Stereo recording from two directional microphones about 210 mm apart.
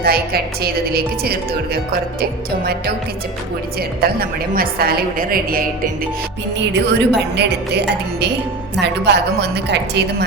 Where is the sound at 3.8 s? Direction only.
45° right (ahead or behind).